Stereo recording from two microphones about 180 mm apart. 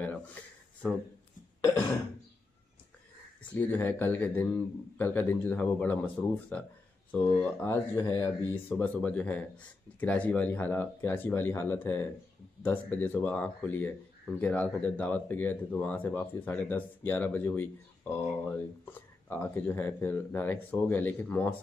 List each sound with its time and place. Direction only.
0.0 s speech: 10° left (ahead or behind)
1.6 s a sound: 15° left (ahead or behind)
3.5 s speech: 10° left (ahead or behind)